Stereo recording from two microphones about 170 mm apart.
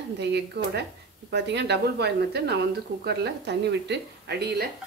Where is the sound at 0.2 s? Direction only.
80° right.